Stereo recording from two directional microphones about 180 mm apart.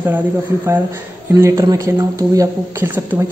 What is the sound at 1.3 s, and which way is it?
Speech, 15° right (ahead or behind).